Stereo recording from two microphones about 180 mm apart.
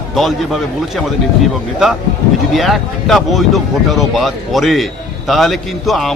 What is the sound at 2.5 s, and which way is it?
Speech, centre (ahead or behind).